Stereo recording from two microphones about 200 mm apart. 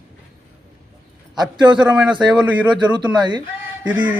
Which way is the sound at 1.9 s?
5° right (ahead or behind).